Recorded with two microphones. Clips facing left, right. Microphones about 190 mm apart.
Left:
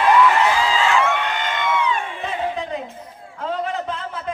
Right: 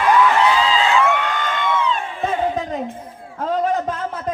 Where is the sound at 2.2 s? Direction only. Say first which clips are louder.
Right 4 dB; 45° right (ahead or behind).